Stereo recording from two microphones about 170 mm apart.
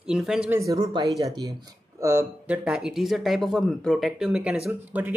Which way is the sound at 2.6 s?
5° right (ahead or behind).